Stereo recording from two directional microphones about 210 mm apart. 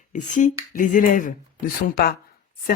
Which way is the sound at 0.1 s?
35° left (ahead or behind).